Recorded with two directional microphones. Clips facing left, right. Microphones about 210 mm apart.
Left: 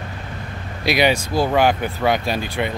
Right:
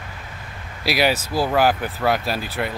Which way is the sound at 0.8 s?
5° right (ahead or behind).